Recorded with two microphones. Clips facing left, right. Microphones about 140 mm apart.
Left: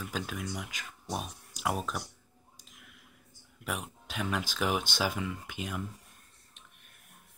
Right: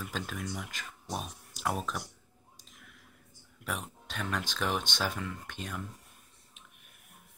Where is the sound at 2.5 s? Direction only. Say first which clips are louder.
Right 1 dB; 5° left (ahead or behind).